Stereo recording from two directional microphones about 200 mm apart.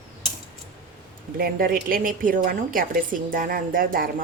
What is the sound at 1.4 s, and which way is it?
A woman's voice, 45° right (ahead or behind).